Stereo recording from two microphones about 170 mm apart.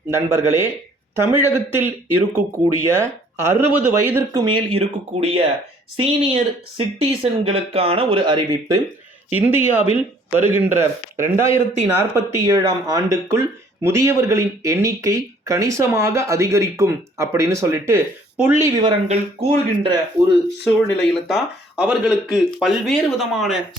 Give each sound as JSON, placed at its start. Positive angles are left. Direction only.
{"t": 0.1, "sound": "speech", "side_deg": -15}
{"t": 4.4, "sound": "speech", "side_deg": -30}
{"t": 9.3, "sound": "speech", "side_deg": -10}
{"t": 19.0, "sound": "speech", "side_deg": -35}
{"t": 20.7, "sound": "speech", "side_deg": 5}